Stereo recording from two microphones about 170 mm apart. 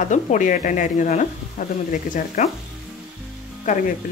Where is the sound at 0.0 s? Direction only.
50° left (ahead or behind).